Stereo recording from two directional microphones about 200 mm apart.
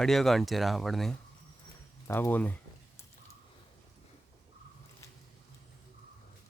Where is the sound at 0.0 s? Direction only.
Centre (ahead or behind).